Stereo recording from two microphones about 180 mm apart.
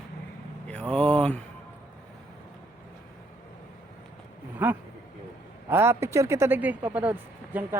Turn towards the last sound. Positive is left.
turn(degrees=-10)  # may be behind; listen again after turning